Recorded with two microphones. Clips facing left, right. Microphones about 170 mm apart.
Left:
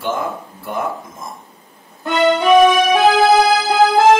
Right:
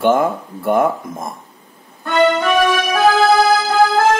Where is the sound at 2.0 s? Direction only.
15° left (ahead or behind).